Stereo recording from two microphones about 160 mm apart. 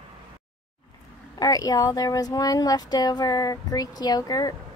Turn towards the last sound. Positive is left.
turn(degrees=25)  # may be behind; listen again after turning